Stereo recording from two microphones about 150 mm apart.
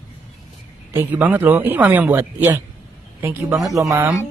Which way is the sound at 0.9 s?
10° right (ahead or behind).